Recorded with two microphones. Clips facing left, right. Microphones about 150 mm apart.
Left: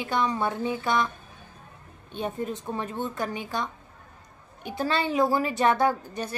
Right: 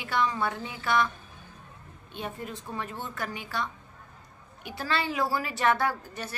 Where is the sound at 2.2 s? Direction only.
25° left (ahead or behind).